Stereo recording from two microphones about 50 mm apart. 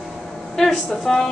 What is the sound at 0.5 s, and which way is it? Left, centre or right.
Speech, centre.